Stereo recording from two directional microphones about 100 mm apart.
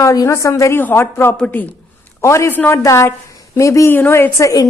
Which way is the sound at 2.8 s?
30° left (ahead or behind).